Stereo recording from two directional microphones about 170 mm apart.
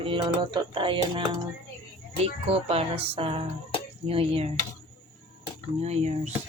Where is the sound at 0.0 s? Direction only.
30° right (ahead or behind).